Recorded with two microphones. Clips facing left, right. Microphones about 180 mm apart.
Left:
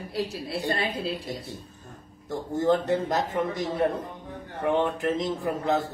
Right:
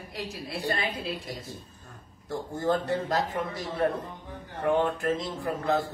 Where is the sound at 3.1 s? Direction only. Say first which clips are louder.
Left 2 dB; 20° left (ahead or behind).